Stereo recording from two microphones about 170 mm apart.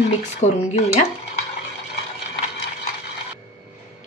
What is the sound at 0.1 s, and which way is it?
Speech, 40° left (ahead or behind).